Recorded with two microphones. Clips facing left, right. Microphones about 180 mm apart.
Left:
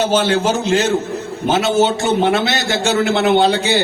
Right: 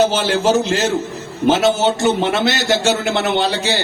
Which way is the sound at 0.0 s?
55° left (ahead or behind).